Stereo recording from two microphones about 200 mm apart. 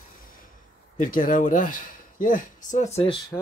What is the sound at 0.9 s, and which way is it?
Speech, 40° left (ahead or behind).